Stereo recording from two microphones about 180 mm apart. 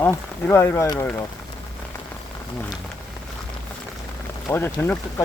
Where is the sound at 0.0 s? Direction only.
10° left (ahead or behind).